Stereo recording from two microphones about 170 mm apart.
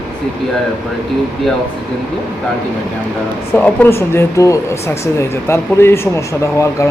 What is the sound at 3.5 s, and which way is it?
Speech, 10° left (ahead or behind).